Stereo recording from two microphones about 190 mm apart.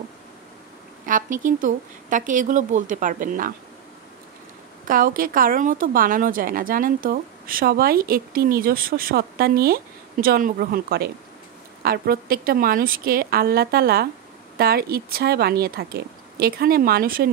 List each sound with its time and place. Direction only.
1.0 s a woman's voice: 45° right (ahead or behind)
4.8 s a woman's voice: 50° right (ahead or behind)